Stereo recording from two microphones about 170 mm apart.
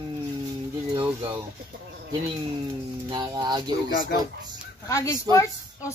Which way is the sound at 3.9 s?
55° left (ahead or behind).